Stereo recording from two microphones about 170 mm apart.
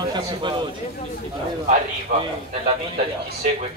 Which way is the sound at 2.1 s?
55° right (ahead or behind).